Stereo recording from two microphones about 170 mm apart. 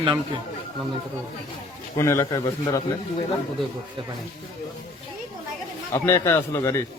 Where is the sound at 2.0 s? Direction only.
15° left (ahead or behind).